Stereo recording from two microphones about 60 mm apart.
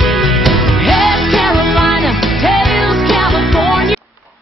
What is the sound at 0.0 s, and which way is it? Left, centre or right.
Music, centre.